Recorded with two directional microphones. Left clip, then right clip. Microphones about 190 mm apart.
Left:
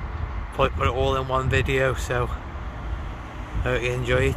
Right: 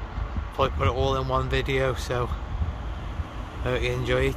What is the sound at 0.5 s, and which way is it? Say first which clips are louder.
Speech: left 2 dB; 5° right (ahead or behind).